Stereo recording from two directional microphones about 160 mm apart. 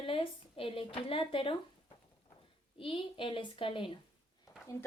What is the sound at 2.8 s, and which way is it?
A woman's voice, 35° left (ahead or behind).